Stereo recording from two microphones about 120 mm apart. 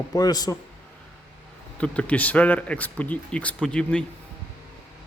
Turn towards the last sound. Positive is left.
turn(degrees=10)  # may be behind; listen again after turning